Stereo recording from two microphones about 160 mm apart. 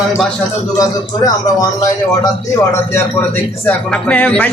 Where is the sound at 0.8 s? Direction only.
25° left (ahead or behind).